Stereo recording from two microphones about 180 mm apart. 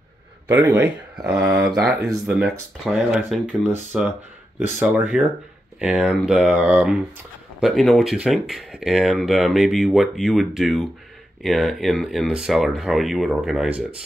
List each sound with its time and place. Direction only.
0.5 s speech: 10° right (ahead or behind)
1.5 s speech: 20° right (ahead or behind)
2.8 s speech: centre (ahead or behind)